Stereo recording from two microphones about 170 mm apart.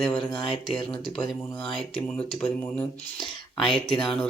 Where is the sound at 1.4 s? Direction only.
10° left (ahead or behind).